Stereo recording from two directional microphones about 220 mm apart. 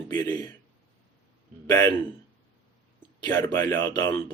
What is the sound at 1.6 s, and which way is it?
Speech, 15° left (ahead or behind).